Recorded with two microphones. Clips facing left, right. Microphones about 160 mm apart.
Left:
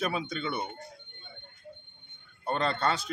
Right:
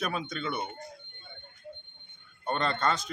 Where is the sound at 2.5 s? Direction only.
5° left (ahead or behind).